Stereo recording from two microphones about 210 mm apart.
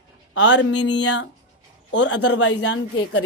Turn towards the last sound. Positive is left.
turn(degrees=75)  # may be behind; listen again after turning